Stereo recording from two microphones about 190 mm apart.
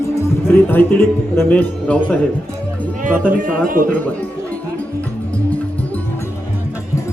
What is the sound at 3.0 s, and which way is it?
Speech, 45° right (ahead or behind).